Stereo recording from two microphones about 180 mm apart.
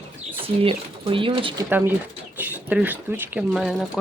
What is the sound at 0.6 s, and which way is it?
Speech, 30° right (ahead or behind).